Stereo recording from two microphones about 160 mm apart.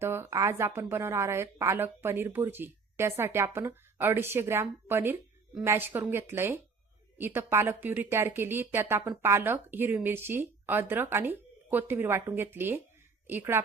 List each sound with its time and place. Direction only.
0.0 s a woman's voice: 15° right (ahead or behind)